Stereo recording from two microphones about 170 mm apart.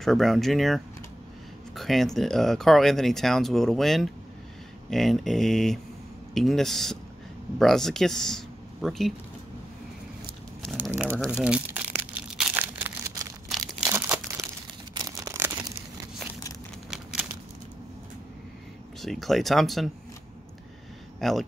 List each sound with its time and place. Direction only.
0.0 s speech: centre (ahead or behind)
10.8 s crumpling: 10° right (ahead or behind)
15.0 s a sound: 20° right (ahead or behind)
16.9 s a sound: 5° right (ahead or behind)
18.9 s speech: centre (ahead or behind)
21.2 s speech: centre (ahead or behind)